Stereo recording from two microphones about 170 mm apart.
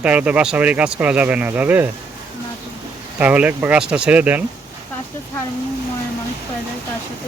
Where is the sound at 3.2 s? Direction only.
10° right (ahead or behind).